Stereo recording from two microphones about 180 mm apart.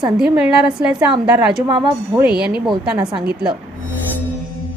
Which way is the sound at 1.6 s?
25° right (ahead or behind).